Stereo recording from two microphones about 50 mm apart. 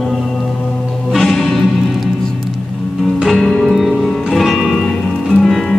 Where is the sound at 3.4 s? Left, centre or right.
Centre.